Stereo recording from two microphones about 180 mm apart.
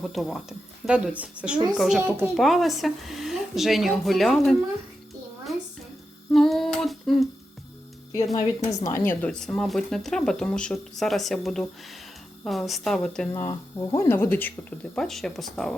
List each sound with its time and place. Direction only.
0.0 s speech: centre (ahead or behind)
6.3 s humming: centre (ahead or behind)
8.1 s speech: 20° left (ahead or behind); by 13.2 s 5° left (ahead or behind)
13.3 s speech: 15° left (ahead or behind); by 15.7 s centre (ahead or behind)